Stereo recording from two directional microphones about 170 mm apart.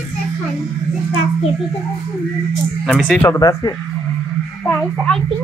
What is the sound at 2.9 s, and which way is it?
Speech, 5° left (ahead or behind).